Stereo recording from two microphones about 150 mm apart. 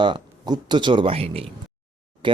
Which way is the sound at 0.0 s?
30° right (ahead or behind).